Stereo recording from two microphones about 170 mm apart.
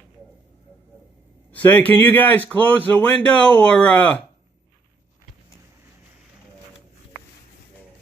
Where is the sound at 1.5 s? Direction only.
10° left (ahead or behind).